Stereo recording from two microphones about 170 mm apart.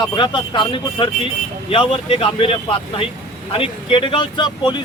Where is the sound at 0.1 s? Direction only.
25° left (ahead or behind).